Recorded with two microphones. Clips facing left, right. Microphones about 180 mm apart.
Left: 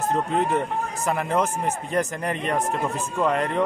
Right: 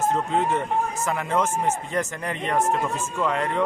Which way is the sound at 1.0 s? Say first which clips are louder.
Left 5 dB; 35° left (ahead or behind).